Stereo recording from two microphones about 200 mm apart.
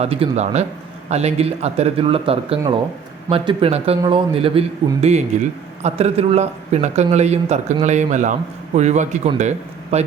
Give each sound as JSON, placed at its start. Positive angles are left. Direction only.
{"t": 0.0, "sound": "a man's voice", "side_deg": -30}